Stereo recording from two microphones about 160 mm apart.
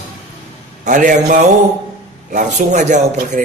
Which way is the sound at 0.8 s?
55° right (ahead or behind).